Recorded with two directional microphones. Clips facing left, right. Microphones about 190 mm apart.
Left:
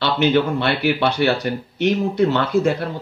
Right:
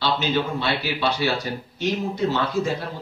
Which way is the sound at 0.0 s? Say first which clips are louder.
Left 6 dB; 60° left (ahead or behind).